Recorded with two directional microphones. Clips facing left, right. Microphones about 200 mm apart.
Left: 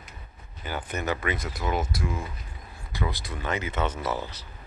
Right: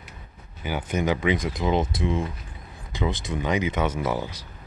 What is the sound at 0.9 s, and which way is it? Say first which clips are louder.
Speech: right 6 dB; 15° right (ahead or behind).